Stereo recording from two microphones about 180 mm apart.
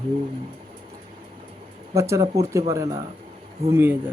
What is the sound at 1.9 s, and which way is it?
Speech, 15° right (ahead or behind).